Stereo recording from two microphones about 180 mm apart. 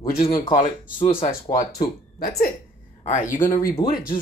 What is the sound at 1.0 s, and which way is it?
Speech, 30° left (ahead or behind).